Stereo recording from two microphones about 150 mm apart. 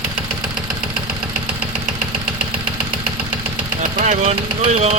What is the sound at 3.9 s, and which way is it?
Speech, 55° right (ahead or behind).